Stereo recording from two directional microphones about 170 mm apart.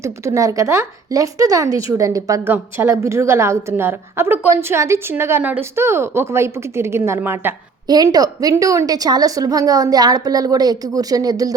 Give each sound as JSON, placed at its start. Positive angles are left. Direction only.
{"t": 0.0, "sound": "a woman's voice", "side_deg": -20}